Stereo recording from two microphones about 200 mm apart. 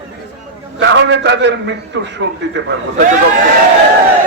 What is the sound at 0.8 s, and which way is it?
A man's voice, 60° right (ahead or behind).